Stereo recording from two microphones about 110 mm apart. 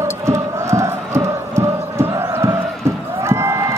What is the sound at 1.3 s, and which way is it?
Chant, 25° right (ahead or behind).